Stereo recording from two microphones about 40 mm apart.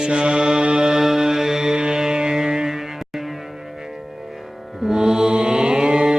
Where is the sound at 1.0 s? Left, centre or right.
Centre.